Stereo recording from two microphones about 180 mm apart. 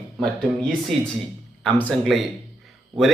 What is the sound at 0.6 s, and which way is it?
A man's voice, centre (ahead or behind).